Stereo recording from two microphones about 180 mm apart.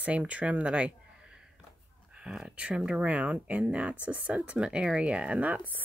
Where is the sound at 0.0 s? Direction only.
5° right (ahead or behind).